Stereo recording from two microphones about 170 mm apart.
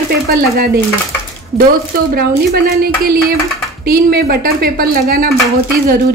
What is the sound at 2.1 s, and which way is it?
Speech, 65° right (ahead or behind).